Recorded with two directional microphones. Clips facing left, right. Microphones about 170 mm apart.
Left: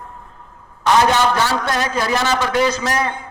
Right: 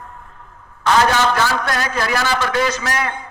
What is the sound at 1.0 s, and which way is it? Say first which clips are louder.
A man's voice: left 1 dB; 20° left (ahead or behind).